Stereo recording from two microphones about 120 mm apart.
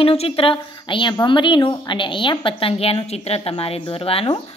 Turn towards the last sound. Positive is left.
turn(degrees=50)  # may be behind; listen again after turning